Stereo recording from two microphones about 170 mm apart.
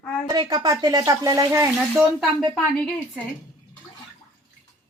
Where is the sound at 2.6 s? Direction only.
Centre (ahead or behind).